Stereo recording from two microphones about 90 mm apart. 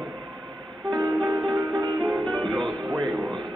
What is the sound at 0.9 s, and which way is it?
Music, 55° right (ahead or behind).